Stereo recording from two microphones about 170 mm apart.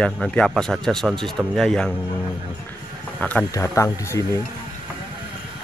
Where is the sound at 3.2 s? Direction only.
10° left (ahead or behind).